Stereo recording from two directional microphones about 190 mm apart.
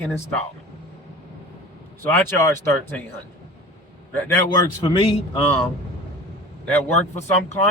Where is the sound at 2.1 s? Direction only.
10° left (ahead or behind).